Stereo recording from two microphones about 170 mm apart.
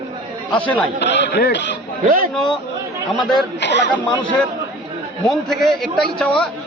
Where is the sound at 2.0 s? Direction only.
55° right (ahead or behind).